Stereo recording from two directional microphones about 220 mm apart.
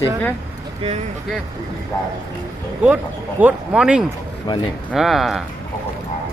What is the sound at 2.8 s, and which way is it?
Speech, 5° right (ahead or behind).